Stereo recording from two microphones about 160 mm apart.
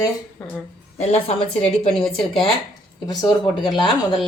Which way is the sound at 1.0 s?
40° left (ahead or behind).